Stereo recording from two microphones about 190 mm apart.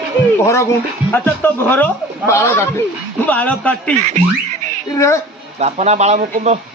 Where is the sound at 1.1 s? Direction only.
10° left (ahead or behind).